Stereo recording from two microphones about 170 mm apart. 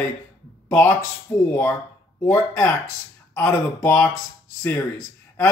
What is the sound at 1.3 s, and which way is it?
Speech, 10° left (ahead or behind).